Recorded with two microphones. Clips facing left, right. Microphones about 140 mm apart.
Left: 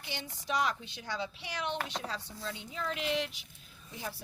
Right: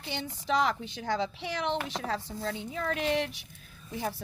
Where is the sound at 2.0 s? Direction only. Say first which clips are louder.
Right 7 dB; 60° right (ahead or behind).